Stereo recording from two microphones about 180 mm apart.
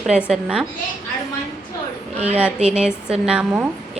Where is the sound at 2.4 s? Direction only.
5° right (ahead or behind).